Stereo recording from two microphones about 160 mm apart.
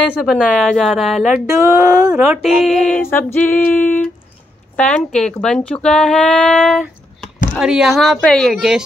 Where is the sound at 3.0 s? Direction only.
15° left (ahead or behind).